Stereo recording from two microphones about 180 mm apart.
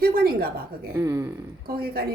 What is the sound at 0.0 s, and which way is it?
Speech, 55° right (ahead or behind).